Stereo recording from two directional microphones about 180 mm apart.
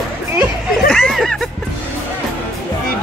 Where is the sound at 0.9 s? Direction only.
Centre (ahead or behind).